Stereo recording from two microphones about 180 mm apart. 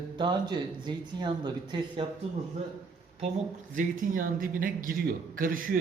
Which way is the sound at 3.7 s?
50° right (ahead or behind).